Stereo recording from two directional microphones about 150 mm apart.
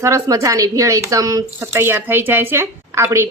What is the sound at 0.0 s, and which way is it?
Speech, 20° right (ahead or behind).